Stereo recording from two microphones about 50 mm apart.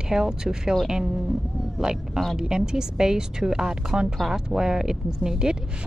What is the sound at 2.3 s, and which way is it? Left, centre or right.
Speech, centre.